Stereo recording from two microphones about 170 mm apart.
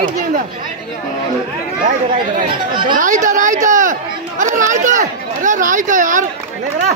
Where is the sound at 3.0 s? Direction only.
50° right (ahead or behind).